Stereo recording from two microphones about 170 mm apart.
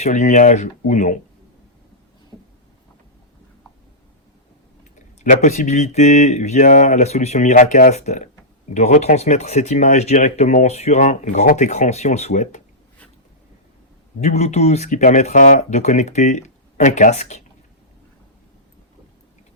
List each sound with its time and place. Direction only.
0.0 s speech: 45° left (ahead or behind)
4.9 s speech: 50° left (ahead or behind)
14.2 s speech: 40° left (ahead or behind)